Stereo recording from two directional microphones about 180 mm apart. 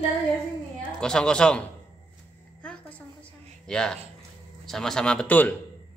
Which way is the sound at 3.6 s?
5° left (ahead or behind).